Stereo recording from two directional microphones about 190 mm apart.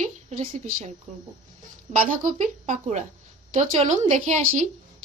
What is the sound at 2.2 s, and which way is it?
Speech, 40° right (ahead or behind).